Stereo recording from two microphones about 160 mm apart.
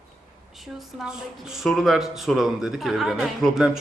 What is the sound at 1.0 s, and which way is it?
A man's voice, 5° right (ahead or behind).